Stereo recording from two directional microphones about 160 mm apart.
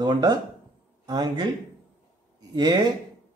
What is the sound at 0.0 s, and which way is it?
Speech, 25° right (ahead or behind).